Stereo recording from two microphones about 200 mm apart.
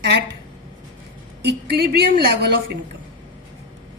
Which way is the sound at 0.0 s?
55° right (ahead or behind).